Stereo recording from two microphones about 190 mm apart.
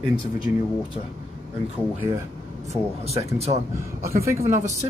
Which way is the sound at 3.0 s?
35° right (ahead or behind).